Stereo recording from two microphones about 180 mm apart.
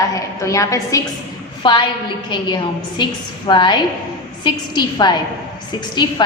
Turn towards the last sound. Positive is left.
turn(degrees=25)  # may be behind; listen again after turning